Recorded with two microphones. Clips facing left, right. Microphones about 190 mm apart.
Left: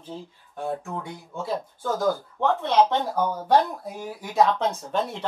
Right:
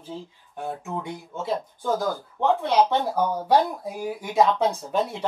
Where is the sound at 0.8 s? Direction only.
20° right (ahead or behind).